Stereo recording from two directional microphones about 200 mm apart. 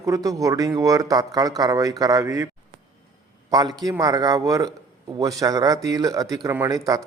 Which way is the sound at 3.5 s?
20° right (ahead or behind).